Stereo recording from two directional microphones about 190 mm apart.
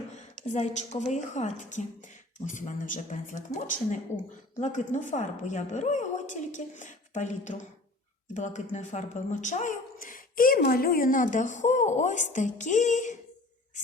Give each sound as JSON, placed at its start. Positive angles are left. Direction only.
{"t": 0.5, "sound": "a woman's voice", "side_deg": 35}